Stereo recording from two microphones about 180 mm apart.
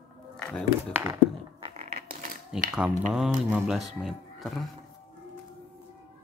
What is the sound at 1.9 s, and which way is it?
Typewriter, 55° right (ahead or behind).